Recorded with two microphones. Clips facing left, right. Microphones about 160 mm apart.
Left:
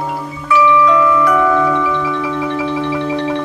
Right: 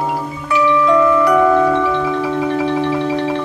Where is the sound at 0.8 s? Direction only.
30° right (ahead or behind).